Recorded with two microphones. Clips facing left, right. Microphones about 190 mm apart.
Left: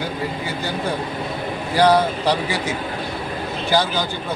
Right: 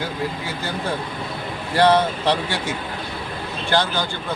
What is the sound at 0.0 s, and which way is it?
Speech, centre (ahead or behind).